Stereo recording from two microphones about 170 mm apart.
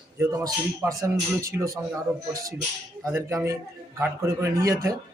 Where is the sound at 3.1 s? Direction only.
15° right (ahead or behind).